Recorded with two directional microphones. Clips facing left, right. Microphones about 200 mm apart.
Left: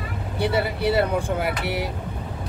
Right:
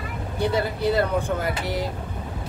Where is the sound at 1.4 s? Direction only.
70° left (ahead or behind).